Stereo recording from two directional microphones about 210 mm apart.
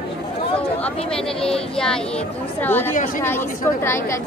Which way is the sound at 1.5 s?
5° left (ahead or behind).